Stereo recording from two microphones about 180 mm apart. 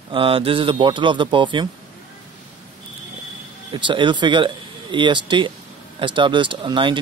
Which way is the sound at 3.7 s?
25° right (ahead or behind).